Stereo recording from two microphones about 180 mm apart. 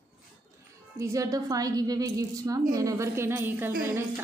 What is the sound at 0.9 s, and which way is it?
A woman's voice, 20° right (ahead or behind).